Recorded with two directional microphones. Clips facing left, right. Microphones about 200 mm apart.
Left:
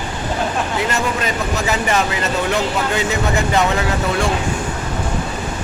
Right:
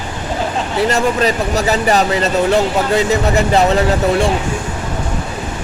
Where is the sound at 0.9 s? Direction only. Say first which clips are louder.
Right 6 dB; 35° right (ahead or behind).